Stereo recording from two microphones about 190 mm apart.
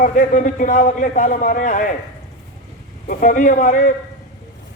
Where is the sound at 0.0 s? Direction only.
40° left (ahead or behind).